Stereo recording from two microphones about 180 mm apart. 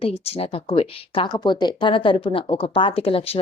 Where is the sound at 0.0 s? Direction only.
35° left (ahead or behind).